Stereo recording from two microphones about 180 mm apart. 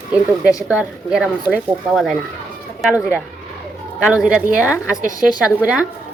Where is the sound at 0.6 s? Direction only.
5° right (ahead or behind).